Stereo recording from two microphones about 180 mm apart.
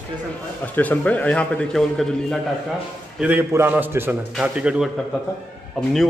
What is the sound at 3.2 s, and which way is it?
A man's voice, 10° right (ahead or behind).